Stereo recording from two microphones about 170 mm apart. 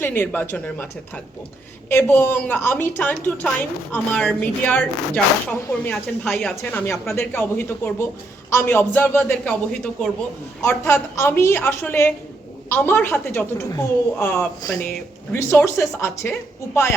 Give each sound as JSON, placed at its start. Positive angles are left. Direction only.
{"t": 0.0, "sound": "speech", "side_deg": 10}
{"t": 14.6, "sound": "speech", "side_deg": 25}